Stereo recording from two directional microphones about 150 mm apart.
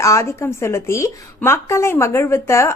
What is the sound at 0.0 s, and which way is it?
A woman's voice, 20° left (ahead or behind).